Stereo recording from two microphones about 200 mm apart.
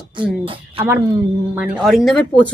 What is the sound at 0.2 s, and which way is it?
Speech, 25° right (ahead or behind).